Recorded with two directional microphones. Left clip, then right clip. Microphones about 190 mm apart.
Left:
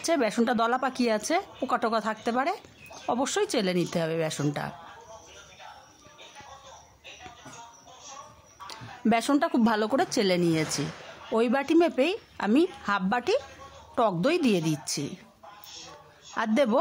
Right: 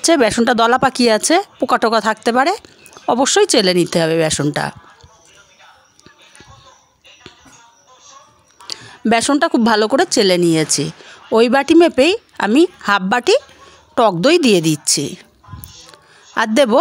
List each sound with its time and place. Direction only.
0.0 s speech: 40° right (ahead or behind)
8.6 s speech: 35° right (ahead or behind)
16.3 s speech: 35° right (ahead or behind)